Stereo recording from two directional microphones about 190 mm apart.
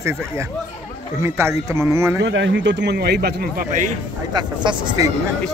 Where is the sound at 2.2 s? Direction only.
70° right (ahead or behind); by 3.9 s 45° right (ahead or behind).